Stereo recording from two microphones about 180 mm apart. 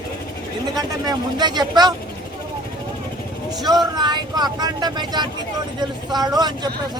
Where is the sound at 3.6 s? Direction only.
20° right (ahead or behind).